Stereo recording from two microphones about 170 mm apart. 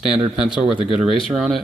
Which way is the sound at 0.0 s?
5° right (ahead or behind).